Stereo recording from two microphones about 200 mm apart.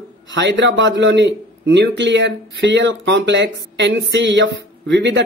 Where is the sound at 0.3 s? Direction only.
65° right (ahead or behind).